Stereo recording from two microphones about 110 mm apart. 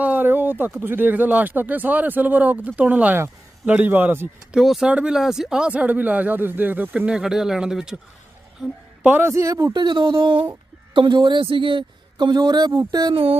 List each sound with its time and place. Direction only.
0.0 s a sound: 15° right (ahead or behind)
0.6 s speech: 20° right (ahead or behind)
4.5 s speech: 5° right (ahead or behind)
9.0 s speech: 20° right (ahead or behind)
9.3 s speech: 30° right (ahead or behind)
9.7 s a woman's voice: 45° right (ahead or behind)
12.8 s a sound: 35° right (ahead or behind)